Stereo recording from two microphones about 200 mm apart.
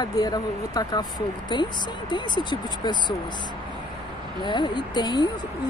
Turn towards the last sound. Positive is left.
turn(degrees=20)  # may be behind; listen again after turning